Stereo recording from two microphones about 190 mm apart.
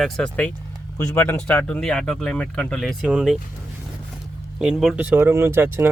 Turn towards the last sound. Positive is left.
turn(degrees=-10)  # may be behind; listen again after turning